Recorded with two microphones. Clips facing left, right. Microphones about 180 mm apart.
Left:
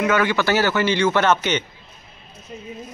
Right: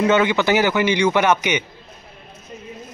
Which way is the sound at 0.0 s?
20° right (ahead or behind).